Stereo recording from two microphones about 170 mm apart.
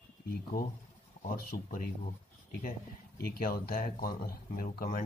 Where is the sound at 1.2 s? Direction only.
55° left (ahead or behind).